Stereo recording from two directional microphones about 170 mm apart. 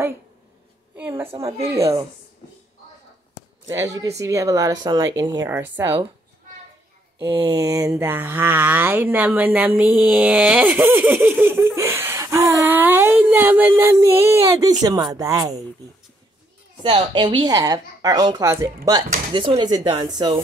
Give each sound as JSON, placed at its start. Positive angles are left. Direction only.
{"t": 0.9, "sound": "speech", "side_deg": -10}
{"t": 3.6, "sound": "speech", "side_deg": -20}
{"t": 7.2, "sound": "speech", "side_deg": -15}
{"t": 16.8, "sound": "speech", "side_deg": -30}